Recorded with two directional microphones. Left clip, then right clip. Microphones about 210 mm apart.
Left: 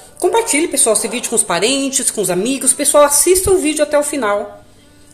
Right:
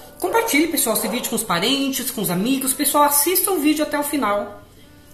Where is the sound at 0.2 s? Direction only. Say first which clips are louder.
Left 4 dB; 40° left (ahead or behind).